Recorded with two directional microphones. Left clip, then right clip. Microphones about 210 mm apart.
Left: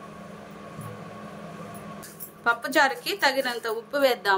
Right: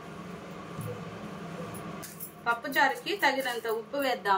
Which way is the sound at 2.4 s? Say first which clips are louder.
Left 4 dB; 60° left (ahead or behind).